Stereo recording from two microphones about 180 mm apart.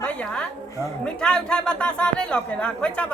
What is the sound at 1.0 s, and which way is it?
A man's voice, 5° left (ahead or behind).